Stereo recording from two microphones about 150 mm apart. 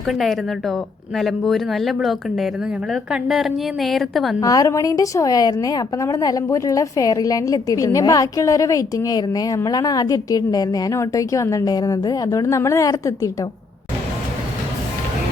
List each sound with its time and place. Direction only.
0.1 s speech: centre (ahead or behind)
4.4 s a woman's voice: 25° left (ahead or behind)